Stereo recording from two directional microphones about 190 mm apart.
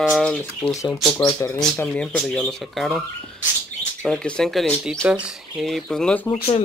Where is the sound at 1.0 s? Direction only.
Centre (ahead or behind).